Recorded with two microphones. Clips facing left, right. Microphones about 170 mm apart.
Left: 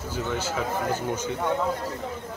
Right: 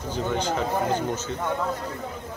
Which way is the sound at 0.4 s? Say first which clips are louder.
Right 3 dB; 5° left (ahead or behind).